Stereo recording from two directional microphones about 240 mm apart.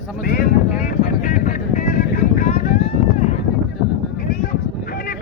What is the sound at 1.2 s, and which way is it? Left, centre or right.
Vehicle, left.